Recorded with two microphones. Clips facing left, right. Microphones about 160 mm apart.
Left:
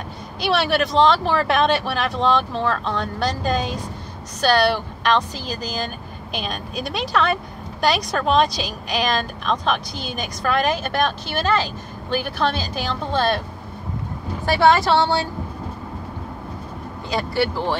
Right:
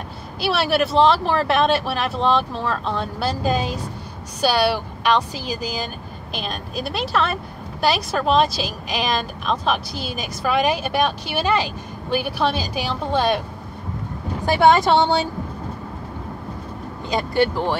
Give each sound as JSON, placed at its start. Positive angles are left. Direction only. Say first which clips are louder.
{"t": 0.4, "sound": "speech", "louder": "even", "side_deg": -5}
{"t": 14.4, "sound": "speech", "louder": "right 1 dB", "side_deg": -20}
{"t": 17.1, "sound": "speech", "louder": "right 2 dB", "side_deg": -20}